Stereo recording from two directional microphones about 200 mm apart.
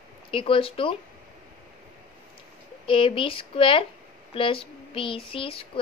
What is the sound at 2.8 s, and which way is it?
Speech, 25° left (ahead or behind).